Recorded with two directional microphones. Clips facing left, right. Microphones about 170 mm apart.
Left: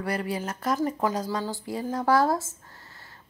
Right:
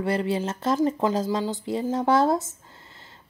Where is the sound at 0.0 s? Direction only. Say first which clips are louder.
Right 5 dB; 25° right (ahead or behind).